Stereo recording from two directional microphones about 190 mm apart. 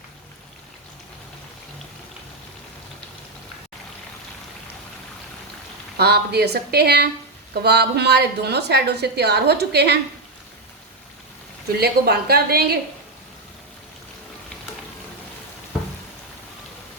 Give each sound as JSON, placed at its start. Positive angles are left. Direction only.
{"t": 6.0, "sound": "a woman's voice", "side_deg": -55}
{"t": 11.8, "sound": "a woman's voice", "side_deg": -55}